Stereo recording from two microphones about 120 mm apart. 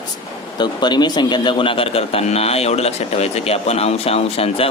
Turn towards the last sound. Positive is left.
turn(degrees=55)  # may be behind; listen again after turning